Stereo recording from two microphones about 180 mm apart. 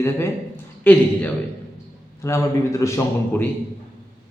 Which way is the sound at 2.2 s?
15° left (ahead or behind).